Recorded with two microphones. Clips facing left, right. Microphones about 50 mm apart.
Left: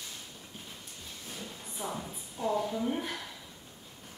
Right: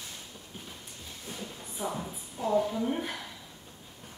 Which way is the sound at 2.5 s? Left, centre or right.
Centre.